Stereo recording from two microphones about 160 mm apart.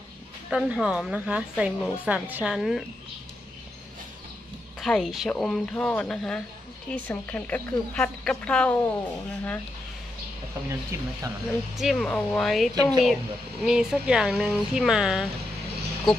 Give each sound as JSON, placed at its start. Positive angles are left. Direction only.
{"t": 0.5, "sound": "speech", "side_deg": -5}
{"t": 4.7, "sound": "speech", "side_deg": 0}
{"t": 10.7, "sound": "speech", "side_deg": -20}
{"t": 11.8, "sound": "speech", "side_deg": 0}